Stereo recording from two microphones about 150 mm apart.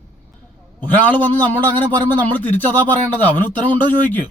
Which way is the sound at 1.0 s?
10° left (ahead or behind).